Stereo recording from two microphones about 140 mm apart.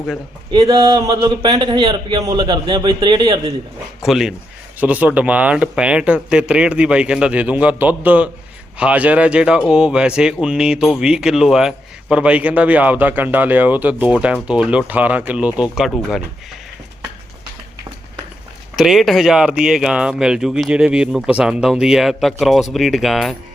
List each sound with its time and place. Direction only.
0.5 s a man's voice: 35° right (ahead or behind)
4.0 s speech: 5° right (ahead or behind)
18.8 s speech: centre (ahead or behind)